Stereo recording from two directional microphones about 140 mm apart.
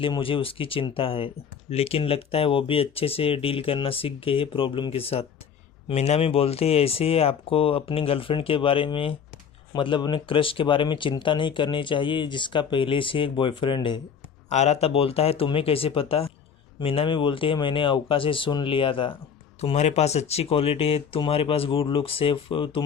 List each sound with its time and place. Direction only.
0.0 s speech: 40° left (ahead or behind)
14.5 s speech: 50° left (ahead or behind)
19.6 s speech: 50° left (ahead or behind)